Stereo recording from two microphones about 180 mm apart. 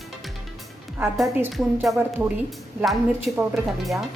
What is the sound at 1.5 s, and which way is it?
A woman's voice, centre (ahead or behind).